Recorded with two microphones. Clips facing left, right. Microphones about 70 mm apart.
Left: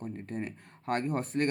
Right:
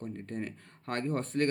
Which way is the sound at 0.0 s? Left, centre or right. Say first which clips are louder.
Left 1 dB; centre.